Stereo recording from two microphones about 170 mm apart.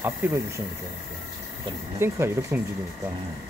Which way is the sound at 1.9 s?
15° right (ahead or behind).